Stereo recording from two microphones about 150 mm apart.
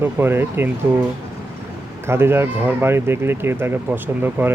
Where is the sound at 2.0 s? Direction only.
15° right (ahead or behind).